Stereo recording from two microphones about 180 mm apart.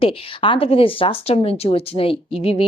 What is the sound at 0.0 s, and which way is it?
A woman's voice, 30° left (ahead or behind).